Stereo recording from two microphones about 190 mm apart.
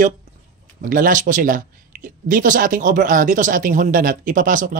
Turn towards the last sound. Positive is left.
turn(degrees=-45)  # may be behind; listen again after turning